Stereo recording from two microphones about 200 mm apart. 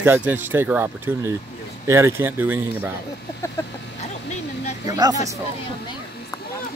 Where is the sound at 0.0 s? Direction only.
10° right (ahead or behind).